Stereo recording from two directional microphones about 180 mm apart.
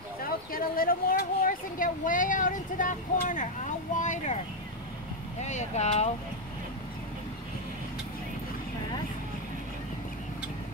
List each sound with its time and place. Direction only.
0.2 s speech: 50° left (ahead or behind)
5.4 s speech: 40° left (ahead or behind)